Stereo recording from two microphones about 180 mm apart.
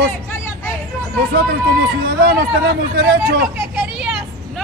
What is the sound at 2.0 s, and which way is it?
Speech, 55° right (ahead or behind).